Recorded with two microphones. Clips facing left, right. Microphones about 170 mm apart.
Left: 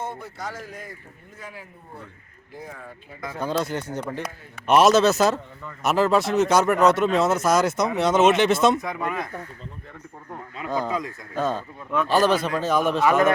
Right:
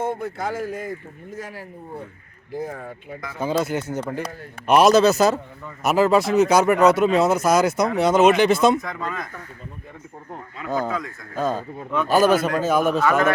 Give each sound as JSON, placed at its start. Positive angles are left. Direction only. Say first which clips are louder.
{"t": 0.1, "sound": "speech", "louder": "right 8 dB", "side_deg": -50}
{"t": 2.6, "sound": "speech", "louder": "right 8 dB", "side_deg": -50}
{"t": 3.4, "sound": "a man's voice", "louder": "right 3 dB", "side_deg": -5}
{"t": 8.8, "sound": "speech", "louder": "left 2 dB", "side_deg": 10}
{"t": 10.8, "sound": "speech", "louder": "right 1 dB", "side_deg": 15}
{"t": 11.3, "sound": "a man's voice", "louder": "right 2 dB", "side_deg": 0}
{"t": 13.1, "sound": "speech", "louder": "left 3 dB", "side_deg": 20}